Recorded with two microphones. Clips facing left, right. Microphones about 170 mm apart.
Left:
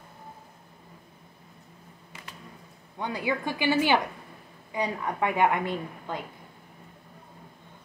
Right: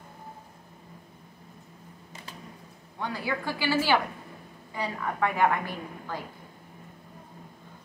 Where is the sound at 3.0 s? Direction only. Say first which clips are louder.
Left 2 dB; 20° left (ahead or behind).